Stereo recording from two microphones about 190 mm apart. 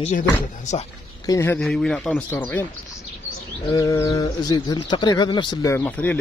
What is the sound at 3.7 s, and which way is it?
Speech, 20° left (ahead or behind).